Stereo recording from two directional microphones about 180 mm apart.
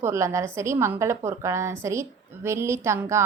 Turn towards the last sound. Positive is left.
turn(degrees=-15)  # may be behind; listen again after turning